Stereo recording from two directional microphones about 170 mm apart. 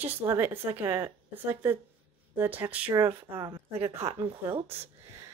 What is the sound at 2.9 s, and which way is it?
Speech, 15° right (ahead or behind).